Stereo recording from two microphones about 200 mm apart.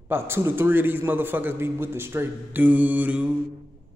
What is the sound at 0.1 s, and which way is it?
A man's voice, 10° right (ahead or behind).